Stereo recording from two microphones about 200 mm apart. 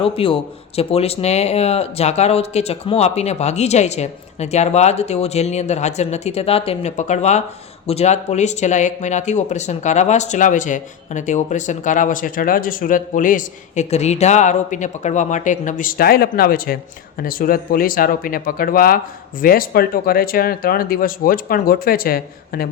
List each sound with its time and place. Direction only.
0.0 s speech: 25° left (ahead or behind); by 22.7 s 50° left (ahead or behind)